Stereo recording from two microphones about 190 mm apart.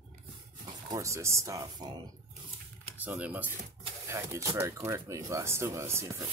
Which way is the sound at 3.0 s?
10° right (ahead or behind).